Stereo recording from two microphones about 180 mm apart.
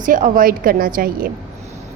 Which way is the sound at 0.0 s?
50° right (ahead or behind).